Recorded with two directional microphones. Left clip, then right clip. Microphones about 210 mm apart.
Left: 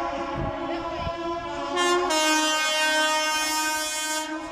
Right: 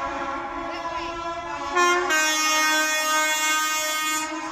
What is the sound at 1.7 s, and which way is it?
Vehicle, 25° left (ahead or behind).